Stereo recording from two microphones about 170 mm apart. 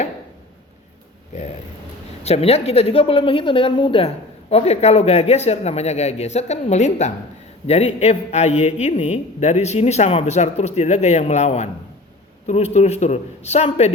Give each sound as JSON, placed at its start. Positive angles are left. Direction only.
{"t": 1.3, "sound": "a woman's voice", "side_deg": 40}